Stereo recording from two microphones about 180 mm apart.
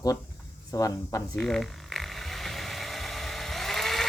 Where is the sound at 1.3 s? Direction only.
Centre (ahead or behind).